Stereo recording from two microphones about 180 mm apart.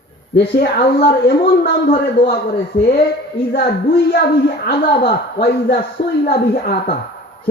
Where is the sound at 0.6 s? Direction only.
55° left (ahead or behind).